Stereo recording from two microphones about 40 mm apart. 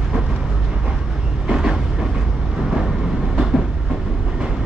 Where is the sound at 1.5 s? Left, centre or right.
Centre.